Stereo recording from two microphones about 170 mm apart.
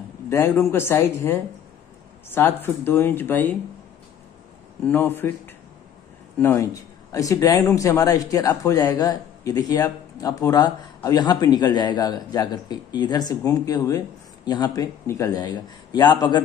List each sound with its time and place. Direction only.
0.3 s speech: 15° left (ahead or behind)
4.8 s speech: 10° left (ahead or behind)
6.4 s a man's voice: 15° left (ahead or behind)